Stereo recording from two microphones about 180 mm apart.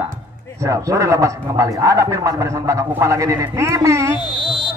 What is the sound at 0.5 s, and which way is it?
Speech, 15° right (ahead or behind).